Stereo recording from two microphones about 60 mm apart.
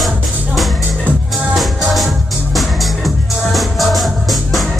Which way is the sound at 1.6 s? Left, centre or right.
Centre.